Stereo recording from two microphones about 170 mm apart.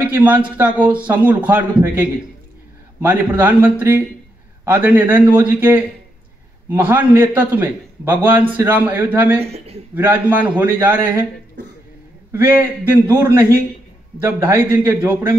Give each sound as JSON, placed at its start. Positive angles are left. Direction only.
{"t": 0.0, "sound": "a man's voice", "side_deg": -10}
{"t": 9.4, "sound": "a man's voice", "side_deg": -35}
{"t": 9.9, "sound": "a man's voice", "side_deg": -10}
{"t": 12.3, "sound": "a man's voice", "side_deg": -15}